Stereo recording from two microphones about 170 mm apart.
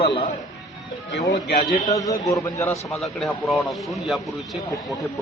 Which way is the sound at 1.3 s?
65° left (ahead or behind).